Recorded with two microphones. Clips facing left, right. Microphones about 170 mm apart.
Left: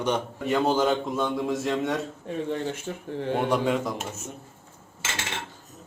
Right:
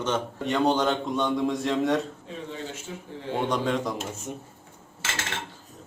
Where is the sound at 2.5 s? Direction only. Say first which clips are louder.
Left 6 dB; 60° left (ahead or behind).